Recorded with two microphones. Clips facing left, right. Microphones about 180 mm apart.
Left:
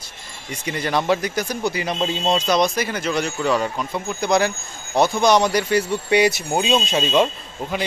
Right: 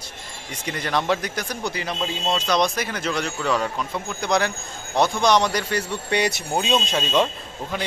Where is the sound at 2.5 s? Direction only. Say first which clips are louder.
Left 3 dB; 5° left (ahead or behind).